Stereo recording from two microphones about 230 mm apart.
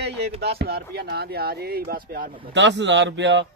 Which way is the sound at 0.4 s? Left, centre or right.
Right.